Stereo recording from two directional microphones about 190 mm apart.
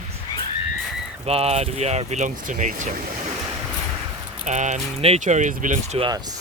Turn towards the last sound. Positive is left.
turn(degrees=-40)  # may be behind; listen again after turning